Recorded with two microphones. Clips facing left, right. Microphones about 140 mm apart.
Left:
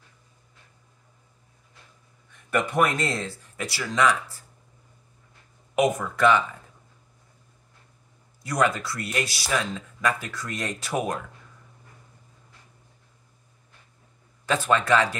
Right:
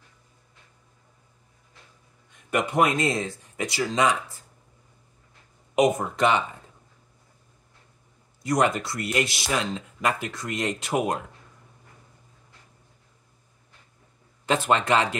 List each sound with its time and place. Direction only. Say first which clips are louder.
2.3 s speech: right 1 dB; 20° right (ahead or behind)
5.8 s speech: right 1 dB; 20° right (ahead or behind)
8.4 s speech: right 1 dB; 20° right (ahead or behind)
14.4 s speech: right 1 dB; 20° right (ahead or behind)